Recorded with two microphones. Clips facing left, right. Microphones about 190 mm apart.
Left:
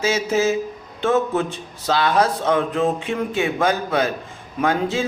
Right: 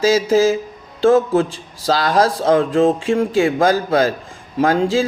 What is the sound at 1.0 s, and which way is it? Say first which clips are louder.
Speech: right 6 dB; 30° right (ahead or behind).